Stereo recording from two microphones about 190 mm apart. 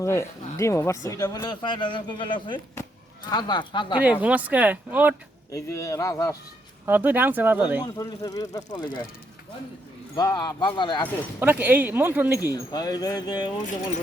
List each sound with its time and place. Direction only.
0.0 s speech: 15° left (ahead or behind)
4.0 s speech: 5° right (ahead or behind)
5.5 s speech: 15° left (ahead or behind)
6.8 s speech: 10° right (ahead or behind)
7.9 s speech: 20° left (ahead or behind)
10.2 s speech: 20° left (ahead or behind)
11.3 s speech: 10° right (ahead or behind)
12.5 s speech: 20° left (ahead or behind)